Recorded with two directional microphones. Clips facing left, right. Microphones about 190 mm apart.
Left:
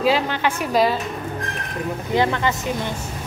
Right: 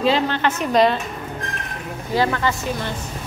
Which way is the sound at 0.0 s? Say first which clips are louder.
Right 1 dB; 10° left (ahead or behind).